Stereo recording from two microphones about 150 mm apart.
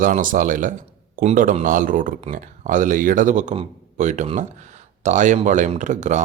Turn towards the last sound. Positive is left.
turn(degrees=-50)  # may be behind; listen again after turning